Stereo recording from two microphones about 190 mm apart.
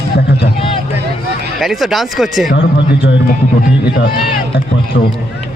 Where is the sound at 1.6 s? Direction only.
Centre (ahead or behind).